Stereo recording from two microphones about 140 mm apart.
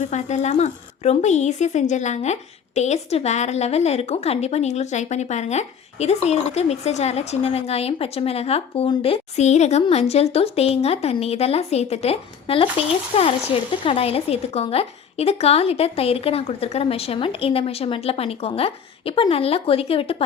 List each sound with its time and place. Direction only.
0.0 s speech: 55° left (ahead or behind)